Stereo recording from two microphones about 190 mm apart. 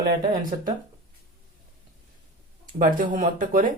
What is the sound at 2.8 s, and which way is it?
Speech, 45° right (ahead or behind).